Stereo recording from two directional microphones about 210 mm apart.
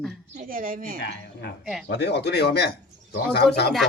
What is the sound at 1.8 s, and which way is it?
Speech, 55° left (ahead or behind).